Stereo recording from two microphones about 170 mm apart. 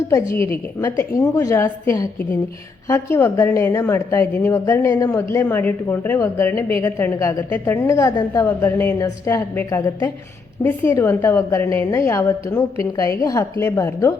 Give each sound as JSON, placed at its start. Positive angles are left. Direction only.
{"t": 0.1, "sound": "a woman's voice", "side_deg": 15}